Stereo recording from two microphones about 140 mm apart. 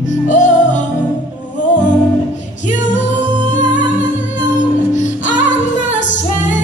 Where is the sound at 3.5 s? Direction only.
65° left (ahead or behind).